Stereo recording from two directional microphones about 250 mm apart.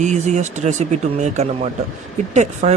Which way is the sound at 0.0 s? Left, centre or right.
Right.